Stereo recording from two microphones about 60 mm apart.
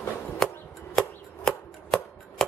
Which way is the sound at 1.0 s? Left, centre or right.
Centre.